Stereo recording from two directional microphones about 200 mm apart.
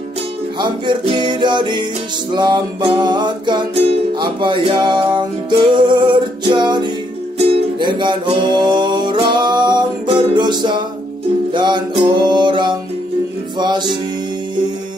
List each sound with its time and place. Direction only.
0.6 s music: 25° right (ahead or behind)